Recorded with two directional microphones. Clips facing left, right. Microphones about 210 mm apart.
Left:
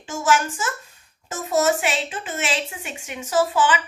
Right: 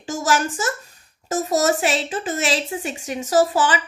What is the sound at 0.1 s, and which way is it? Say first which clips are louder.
A child's voice: even; 35° right (ahead or behind).